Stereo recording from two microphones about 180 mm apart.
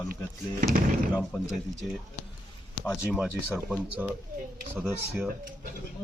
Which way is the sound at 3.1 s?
5° right (ahead or behind).